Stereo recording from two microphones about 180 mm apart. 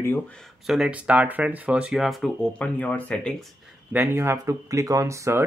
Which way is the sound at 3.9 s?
10° right (ahead or behind).